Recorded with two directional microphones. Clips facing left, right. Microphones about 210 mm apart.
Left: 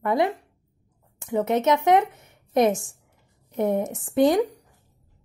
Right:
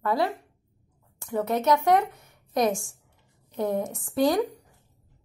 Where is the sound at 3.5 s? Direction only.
20° left (ahead or behind).